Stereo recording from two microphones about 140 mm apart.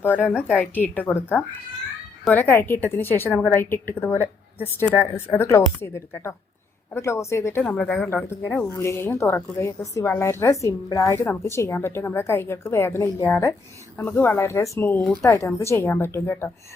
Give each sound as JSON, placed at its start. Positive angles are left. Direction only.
{"t": 0.3, "sound": "a woman's voice", "side_deg": -5}
{"t": 0.6, "sound": "a woman's voice", "side_deg": 15}